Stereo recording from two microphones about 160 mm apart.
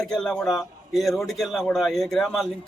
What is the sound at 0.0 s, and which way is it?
A man's voice, 5° left (ahead or behind).